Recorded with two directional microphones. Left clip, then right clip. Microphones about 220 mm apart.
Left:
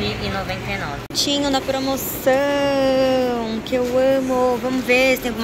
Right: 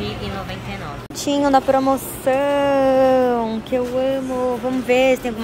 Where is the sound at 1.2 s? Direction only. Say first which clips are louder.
Right 6 dB; 20° right (ahead or behind).